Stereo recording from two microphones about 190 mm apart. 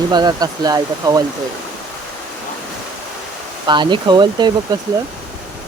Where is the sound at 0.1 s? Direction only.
20° right (ahead or behind).